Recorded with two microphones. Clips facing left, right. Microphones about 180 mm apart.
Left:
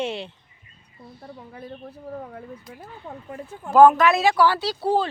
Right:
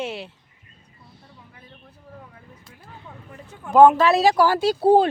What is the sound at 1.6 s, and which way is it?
Speech, 55° left (ahead or behind).